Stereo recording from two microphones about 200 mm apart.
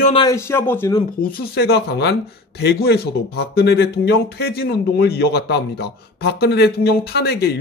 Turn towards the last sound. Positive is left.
turn(degrees=55)  # may be behind; listen again after turning